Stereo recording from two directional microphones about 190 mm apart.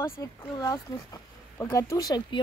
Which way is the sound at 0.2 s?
20° left (ahead or behind).